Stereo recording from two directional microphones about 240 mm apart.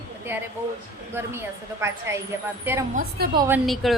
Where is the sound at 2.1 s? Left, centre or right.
Centre.